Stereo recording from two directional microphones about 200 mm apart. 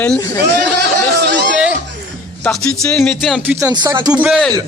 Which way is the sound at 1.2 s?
60° right (ahead or behind).